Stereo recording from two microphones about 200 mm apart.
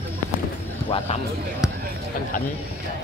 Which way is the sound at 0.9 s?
30° left (ahead or behind).